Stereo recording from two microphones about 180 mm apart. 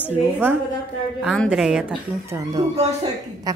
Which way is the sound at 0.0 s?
10° right (ahead or behind).